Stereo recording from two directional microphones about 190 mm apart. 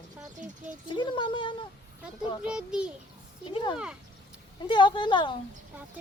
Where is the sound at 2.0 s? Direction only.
5° right (ahead or behind).